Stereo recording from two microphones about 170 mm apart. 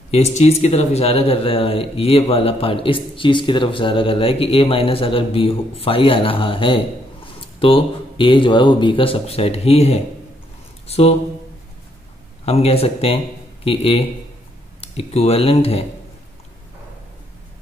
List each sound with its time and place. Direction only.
0.1 s speech: 40° left (ahead or behind)
12.4 s speech: 35° left (ahead or behind)